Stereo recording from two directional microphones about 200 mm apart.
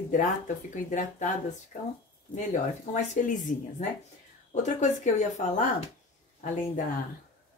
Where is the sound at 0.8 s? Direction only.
40° left (ahead or behind).